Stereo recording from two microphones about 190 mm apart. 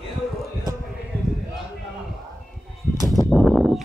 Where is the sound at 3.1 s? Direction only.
Centre (ahead or behind).